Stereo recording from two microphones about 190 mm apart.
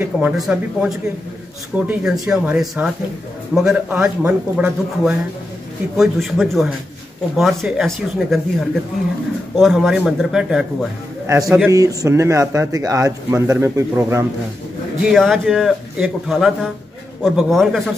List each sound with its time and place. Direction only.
0.0 s a man's voice: 10° right (ahead or behind)
11.2 s a man's voice: 15° right (ahead or behind)
15.0 s a man's voice: centre (ahead or behind)